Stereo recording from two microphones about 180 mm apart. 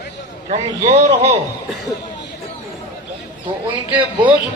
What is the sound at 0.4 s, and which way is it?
Speech, 35° right (ahead or behind).